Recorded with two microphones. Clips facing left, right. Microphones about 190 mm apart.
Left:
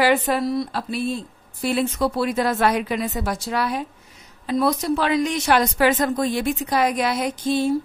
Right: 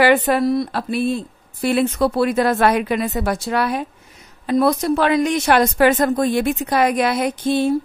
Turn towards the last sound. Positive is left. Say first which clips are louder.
# right 3 dB
turn(degrees=-60)  # may be behind; listen again after turning